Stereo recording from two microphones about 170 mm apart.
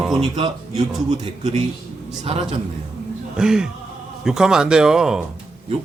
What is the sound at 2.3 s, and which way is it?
Speech, 35° right (ahead or behind).